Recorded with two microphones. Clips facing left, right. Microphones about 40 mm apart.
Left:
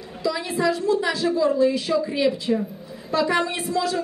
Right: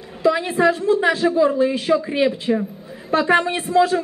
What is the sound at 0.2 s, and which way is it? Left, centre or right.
Speech, right.